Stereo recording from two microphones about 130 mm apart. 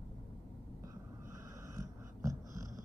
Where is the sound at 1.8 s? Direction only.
25° right (ahead or behind).